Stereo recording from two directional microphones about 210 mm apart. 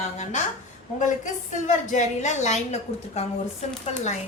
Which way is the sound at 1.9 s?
35° left (ahead or behind).